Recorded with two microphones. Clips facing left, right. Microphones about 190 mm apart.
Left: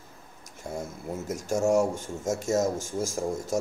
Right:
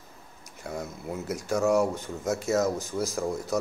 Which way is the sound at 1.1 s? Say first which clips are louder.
Even; 45° left (ahead or behind).